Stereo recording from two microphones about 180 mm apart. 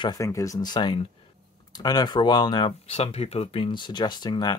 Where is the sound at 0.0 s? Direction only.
20° left (ahead or behind).